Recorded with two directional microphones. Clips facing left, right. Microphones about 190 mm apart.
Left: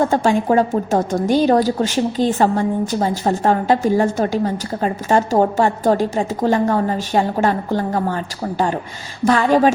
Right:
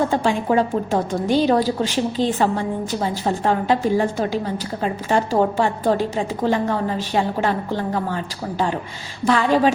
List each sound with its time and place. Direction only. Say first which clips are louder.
0.1 s a woman's voice: left 3 dB; 45° left (ahead or behind)